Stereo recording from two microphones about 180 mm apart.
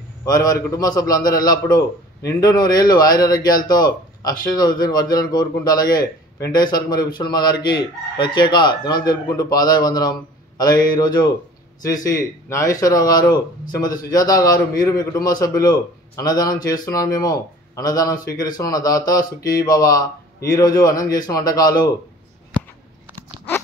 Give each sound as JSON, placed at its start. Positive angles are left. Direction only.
{"t": 0.2, "sound": "speech", "side_deg": 20}